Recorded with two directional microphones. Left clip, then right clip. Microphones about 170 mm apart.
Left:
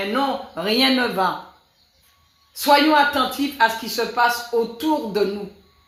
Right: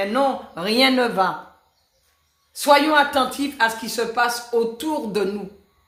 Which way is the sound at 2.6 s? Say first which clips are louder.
Even; 20° right (ahead or behind).